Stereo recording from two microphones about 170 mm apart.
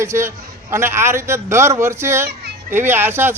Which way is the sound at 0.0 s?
15° right (ahead or behind).